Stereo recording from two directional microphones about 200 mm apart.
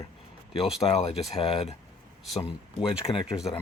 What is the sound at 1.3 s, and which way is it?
Speech, 30° left (ahead or behind).